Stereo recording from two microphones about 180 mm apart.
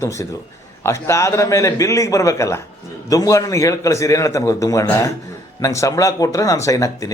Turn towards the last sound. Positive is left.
turn(degrees=20)  # may be behind; listen again after turning